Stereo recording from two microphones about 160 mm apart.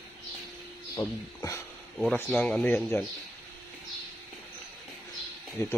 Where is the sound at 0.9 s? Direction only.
20° left (ahead or behind).